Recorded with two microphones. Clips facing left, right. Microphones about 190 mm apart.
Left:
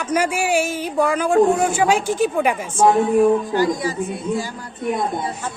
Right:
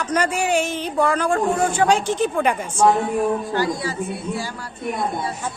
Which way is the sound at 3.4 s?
20° left (ahead or behind).